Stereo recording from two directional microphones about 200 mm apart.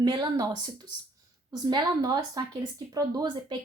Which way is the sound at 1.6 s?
20° right (ahead or behind).